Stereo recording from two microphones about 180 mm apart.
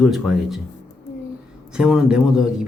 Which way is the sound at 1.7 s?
5° right (ahead or behind).